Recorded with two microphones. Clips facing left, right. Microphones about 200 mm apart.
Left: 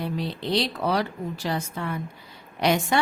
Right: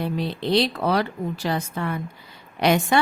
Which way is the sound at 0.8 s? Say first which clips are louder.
Right 3 dB; 60° right (ahead or behind).